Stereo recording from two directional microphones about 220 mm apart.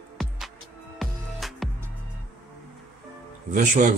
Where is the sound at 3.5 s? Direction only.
35° right (ahead or behind).